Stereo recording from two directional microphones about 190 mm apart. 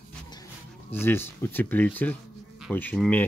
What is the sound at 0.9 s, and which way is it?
Speech, 10° left (ahead or behind).